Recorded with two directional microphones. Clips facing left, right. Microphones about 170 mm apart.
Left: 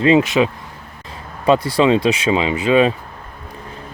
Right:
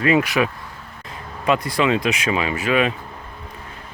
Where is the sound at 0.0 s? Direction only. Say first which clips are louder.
Left 5 dB; 25° left (ahead or behind).